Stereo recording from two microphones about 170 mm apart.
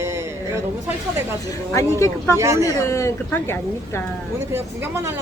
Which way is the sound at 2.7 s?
20° left (ahead or behind).